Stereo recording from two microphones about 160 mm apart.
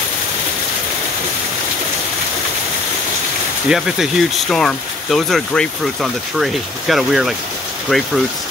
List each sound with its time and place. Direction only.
3.6 s speech: 5° right (ahead or behind)